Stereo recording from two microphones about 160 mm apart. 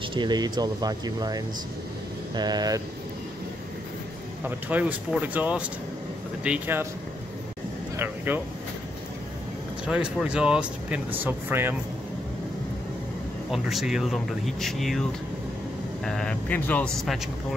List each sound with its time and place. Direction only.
0.1 s speech: 25° right (ahead or behind)
4.5 s speech: 10° right (ahead or behind)
8.3 s speech: 10° right (ahead or behind)
9.8 s speech: 5° right (ahead or behind)
13.5 s speech: centre (ahead or behind)